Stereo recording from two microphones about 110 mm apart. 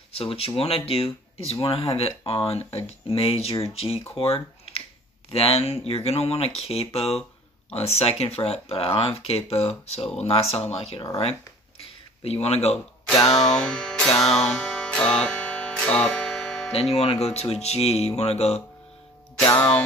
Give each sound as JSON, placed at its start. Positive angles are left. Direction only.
{"t": 0.1, "sound": "speech", "side_deg": 60}
{"t": 12.2, "sound": "speech", "side_deg": 70}
{"t": 13.6, "sound": "music", "side_deg": 5}
{"t": 16.7, "sound": "speech", "side_deg": 70}